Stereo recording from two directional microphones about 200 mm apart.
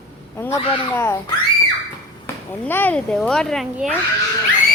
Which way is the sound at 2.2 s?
10° left (ahead or behind).